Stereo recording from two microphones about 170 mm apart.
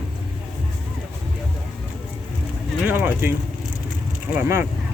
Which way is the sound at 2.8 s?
10° right (ahead or behind).